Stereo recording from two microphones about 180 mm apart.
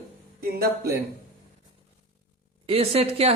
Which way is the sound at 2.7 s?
35° right (ahead or behind).